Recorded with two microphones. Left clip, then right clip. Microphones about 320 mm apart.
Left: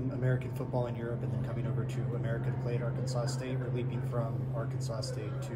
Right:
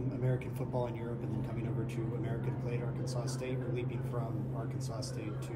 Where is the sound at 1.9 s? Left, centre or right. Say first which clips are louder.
Left 2 dB; left.